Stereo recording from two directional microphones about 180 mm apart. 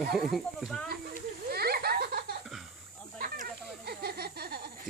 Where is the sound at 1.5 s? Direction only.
60° right (ahead or behind).